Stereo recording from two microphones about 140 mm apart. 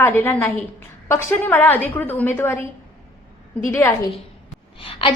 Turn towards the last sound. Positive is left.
turn(degrees=40)  # may be behind; listen again after turning